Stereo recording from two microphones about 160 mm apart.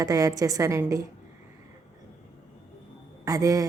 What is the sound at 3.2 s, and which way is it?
Speech, 20° right (ahead or behind).